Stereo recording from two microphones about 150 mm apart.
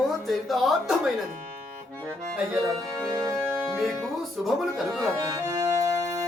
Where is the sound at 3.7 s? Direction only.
5° right (ahead or behind).